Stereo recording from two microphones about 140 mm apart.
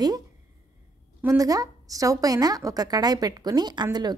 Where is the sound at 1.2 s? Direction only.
25° right (ahead or behind).